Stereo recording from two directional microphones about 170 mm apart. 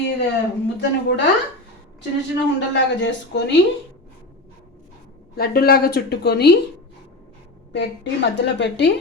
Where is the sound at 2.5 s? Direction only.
90° left.